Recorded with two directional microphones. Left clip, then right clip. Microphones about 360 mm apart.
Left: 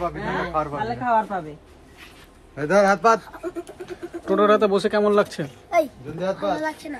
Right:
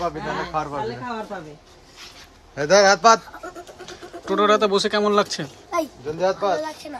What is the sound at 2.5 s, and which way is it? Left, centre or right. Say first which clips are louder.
Speech: right 3 dB; right.